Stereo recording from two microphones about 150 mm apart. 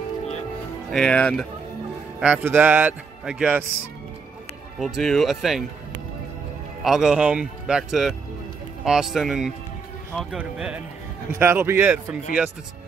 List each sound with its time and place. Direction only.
0.9 s a man's voice: 5° left (ahead or behind)
2.1 s a man's voice: 5° right (ahead or behind)
4.7 s a man's voice: centre (ahead or behind)
6.8 s a man's voice: centre (ahead or behind)